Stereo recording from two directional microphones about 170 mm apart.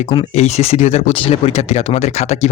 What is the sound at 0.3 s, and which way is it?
Speech, 40° left (ahead or behind).